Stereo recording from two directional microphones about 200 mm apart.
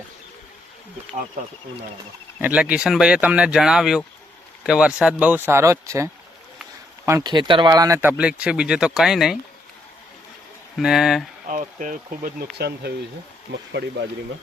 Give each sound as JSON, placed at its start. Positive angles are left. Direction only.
{"t": 2.4, "sound": "speech", "side_deg": -5}
{"t": 10.8, "sound": "speech", "side_deg": 0}
{"t": 11.4, "sound": "speech", "side_deg": -40}
{"t": 12.5, "sound": "speech", "side_deg": -55}